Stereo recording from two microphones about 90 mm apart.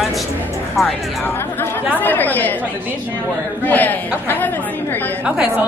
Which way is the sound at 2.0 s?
20° left (ahead or behind).